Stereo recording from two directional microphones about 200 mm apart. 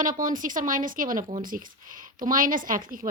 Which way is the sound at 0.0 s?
40° right (ahead or behind).